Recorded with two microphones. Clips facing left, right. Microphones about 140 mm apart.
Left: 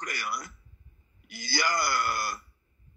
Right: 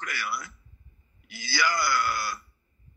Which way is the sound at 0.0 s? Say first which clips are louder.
Right 1 dB; 45° left (ahead or behind).